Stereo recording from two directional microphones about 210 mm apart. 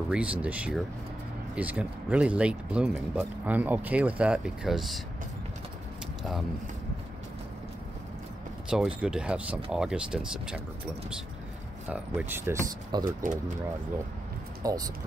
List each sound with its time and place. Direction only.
0.1 s speech: 5° right (ahead or behind)
8.6 s speech: 5° right (ahead or behind)
11.9 s speech: 10° right (ahead or behind)
13.0 s speech: 40° right (ahead or behind)
14.6 s speech: 15° right (ahead or behind)